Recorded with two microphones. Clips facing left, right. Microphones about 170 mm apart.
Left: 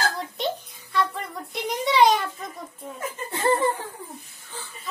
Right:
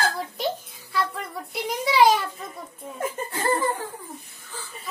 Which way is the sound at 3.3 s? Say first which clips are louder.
Left 4 dB; 25° left (ahead or behind).